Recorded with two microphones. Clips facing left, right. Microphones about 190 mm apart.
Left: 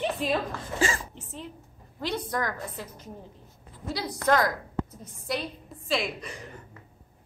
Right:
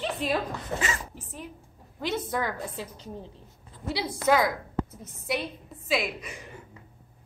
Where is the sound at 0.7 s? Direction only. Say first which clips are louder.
Left 4 dB; 30° left (ahead or behind).